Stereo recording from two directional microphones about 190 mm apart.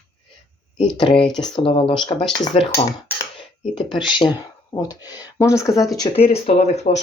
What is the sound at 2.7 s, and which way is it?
Cutlery, 10° left (ahead or behind).